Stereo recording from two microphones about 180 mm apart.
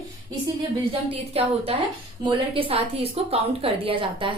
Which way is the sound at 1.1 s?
30° right (ahead or behind).